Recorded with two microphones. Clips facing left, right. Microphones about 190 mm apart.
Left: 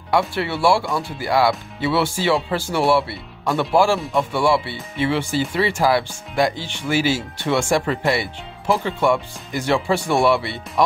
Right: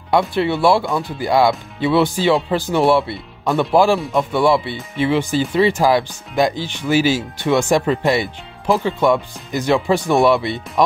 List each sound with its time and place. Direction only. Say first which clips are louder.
0.1 s speech: right 4 dB; 20° right (ahead or behind)